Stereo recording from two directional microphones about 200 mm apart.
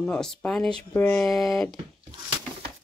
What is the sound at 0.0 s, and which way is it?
Speech, 5° left (ahead or behind).